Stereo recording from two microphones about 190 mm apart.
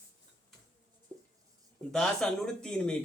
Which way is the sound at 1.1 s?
20° right (ahead or behind).